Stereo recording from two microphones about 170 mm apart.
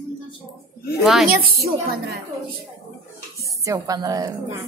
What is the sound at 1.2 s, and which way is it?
Speech, 65° right (ahead or behind).